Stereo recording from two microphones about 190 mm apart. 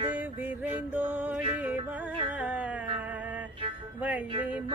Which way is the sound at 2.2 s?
10° right (ahead or behind).